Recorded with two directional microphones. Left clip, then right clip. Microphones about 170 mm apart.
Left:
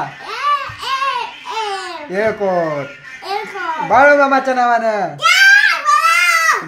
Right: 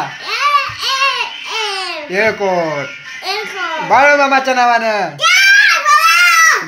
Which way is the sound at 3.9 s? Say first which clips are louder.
Even; 20° left (ahead or behind).